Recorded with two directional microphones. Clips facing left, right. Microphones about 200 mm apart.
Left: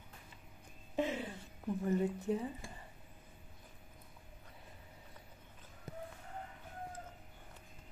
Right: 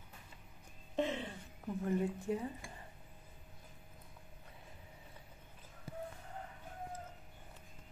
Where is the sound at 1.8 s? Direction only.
5° left (ahead or behind).